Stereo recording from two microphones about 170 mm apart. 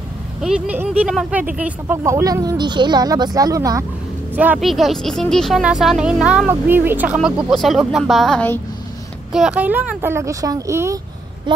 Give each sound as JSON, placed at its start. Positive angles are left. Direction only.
{"t": 0.4, "sound": "speech", "side_deg": -5}
{"t": 4.4, "sound": "speech", "side_deg": -5}
{"t": 9.3, "sound": "speech", "side_deg": -5}
{"t": 11.5, "sound": "speech", "side_deg": -25}